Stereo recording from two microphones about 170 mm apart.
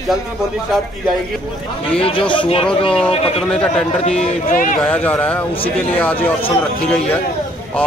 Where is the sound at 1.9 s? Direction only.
35° left (ahead or behind).